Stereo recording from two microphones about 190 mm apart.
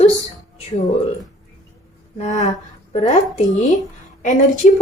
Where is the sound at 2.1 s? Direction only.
40° left (ahead or behind).